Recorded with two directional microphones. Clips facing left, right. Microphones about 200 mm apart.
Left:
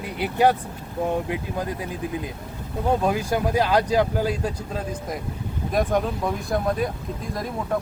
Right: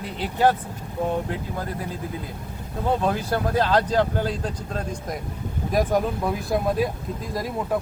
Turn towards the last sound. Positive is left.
turn(degrees=0)  # may be behind; listen again after turning